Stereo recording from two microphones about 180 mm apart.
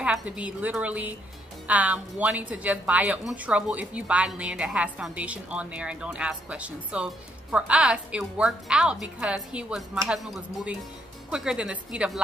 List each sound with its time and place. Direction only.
0.0 s a woman's voice: 5° right (ahead or behind)